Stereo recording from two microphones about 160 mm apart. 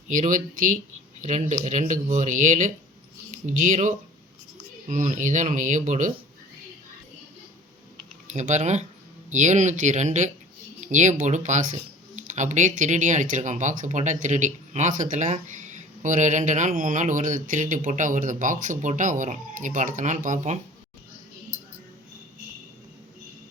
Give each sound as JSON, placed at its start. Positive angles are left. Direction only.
{"t": 0.1, "sound": "speech", "side_deg": -55}
{"t": 8.3, "sound": "speech", "side_deg": -50}